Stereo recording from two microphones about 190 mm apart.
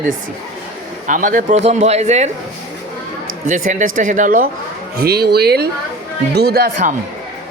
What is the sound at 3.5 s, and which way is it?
Speech, 40° right (ahead or behind).